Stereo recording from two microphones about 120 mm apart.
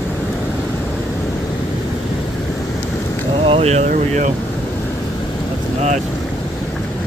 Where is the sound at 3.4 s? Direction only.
55° right (ahead or behind); by 4.3 s 75° right (ahead or behind).